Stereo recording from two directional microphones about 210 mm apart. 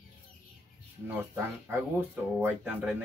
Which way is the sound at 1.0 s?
10° right (ahead or behind).